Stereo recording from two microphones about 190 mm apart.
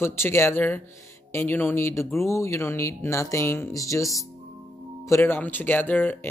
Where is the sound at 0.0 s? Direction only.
15° left (ahead or behind).